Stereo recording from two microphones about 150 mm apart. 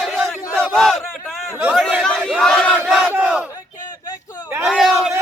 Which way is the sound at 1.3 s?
5° right (ahead or behind).